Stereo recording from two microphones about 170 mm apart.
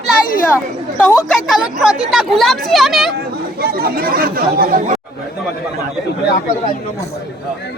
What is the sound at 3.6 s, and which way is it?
Speech, 65° right (ahead or behind).